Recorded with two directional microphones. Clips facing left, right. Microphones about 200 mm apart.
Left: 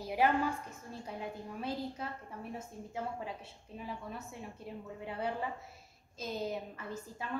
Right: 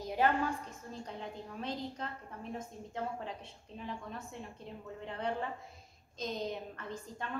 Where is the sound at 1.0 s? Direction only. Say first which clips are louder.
Left 4 dB; 10° left (ahead or behind).